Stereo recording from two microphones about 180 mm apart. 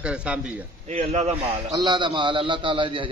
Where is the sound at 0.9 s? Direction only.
35° right (ahead or behind).